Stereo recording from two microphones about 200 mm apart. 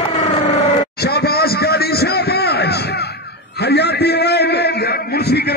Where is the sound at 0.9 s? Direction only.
50° left (ahead or behind).